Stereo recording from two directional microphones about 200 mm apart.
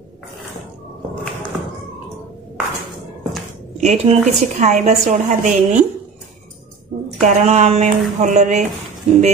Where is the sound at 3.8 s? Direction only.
35° right (ahead or behind).